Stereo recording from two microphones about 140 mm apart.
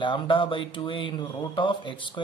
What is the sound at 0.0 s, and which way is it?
Speech, 35° left (ahead or behind).